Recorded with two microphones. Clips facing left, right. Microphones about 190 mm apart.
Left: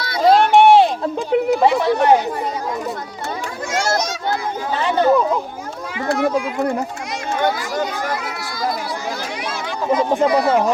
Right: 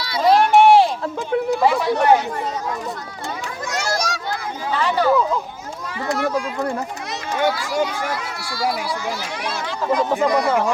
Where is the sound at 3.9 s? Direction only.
25° left (ahead or behind).